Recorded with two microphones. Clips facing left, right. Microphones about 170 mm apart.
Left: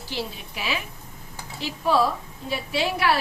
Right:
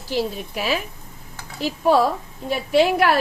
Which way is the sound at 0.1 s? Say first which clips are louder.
Right 9 dB; 45° right (ahead or behind).